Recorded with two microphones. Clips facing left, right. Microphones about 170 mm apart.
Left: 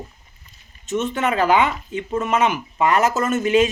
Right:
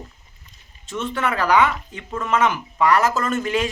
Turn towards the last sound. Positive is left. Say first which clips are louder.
# left 5 dB
turn(degrees=20)  # may be behind; listen again after turning